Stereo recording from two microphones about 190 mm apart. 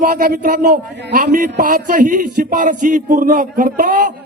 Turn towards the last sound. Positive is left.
turn(degrees=-45)  # may be behind; listen again after turning